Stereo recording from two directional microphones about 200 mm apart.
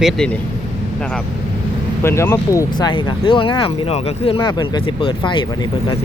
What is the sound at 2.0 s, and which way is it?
Speech, 15° left (ahead or behind).